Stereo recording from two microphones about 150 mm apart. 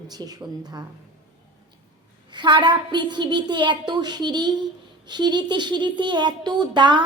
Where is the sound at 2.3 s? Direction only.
30° right (ahead or behind).